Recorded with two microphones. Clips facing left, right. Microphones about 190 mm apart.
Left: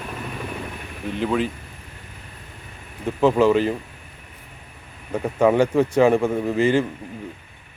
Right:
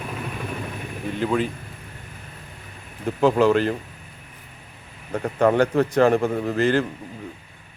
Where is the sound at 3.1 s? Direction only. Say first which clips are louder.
Left 1 dB; 5° left (ahead or behind).